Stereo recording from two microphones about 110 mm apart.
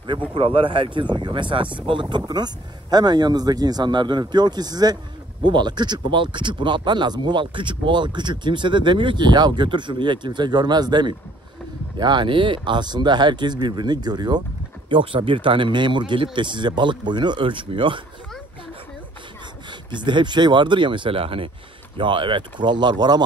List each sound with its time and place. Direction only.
0.3 s speech: 55° right (ahead or behind); by 14.4 s 40° right (ahead or behind)
14.9 s speech: 50° right (ahead or behind)
19.9 s speech: 45° right (ahead or behind)